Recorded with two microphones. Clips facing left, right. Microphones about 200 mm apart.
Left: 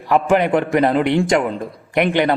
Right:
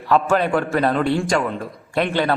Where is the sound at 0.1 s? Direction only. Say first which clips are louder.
Left 2 dB; 15° left (ahead or behind).